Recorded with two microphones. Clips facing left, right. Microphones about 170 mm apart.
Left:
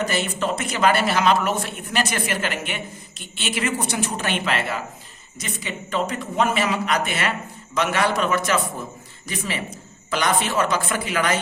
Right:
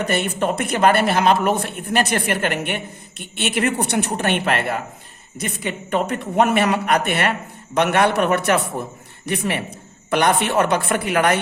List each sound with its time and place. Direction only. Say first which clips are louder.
0.0 s speech: right 3 dB; 60° right (ahead or behind)